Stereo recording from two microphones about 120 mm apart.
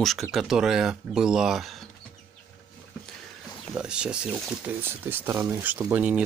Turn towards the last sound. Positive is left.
turn(degrees=-15)  # may be behind; listen again after turning